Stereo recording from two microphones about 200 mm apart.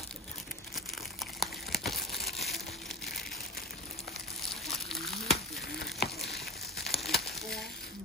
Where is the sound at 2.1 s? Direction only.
55° left (ahead or behind).